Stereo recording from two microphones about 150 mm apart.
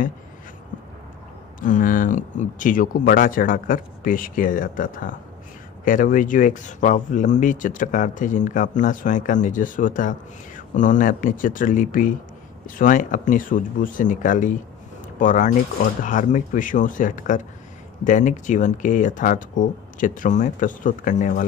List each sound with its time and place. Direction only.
1.6 s speech: 65° left (ahead or behind)